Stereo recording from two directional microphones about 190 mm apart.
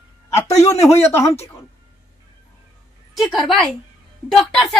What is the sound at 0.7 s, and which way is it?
Speech, 15° left (ahead or behind).